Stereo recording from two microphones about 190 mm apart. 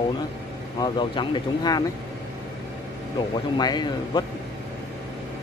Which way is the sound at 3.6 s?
20° left (ahead or behind).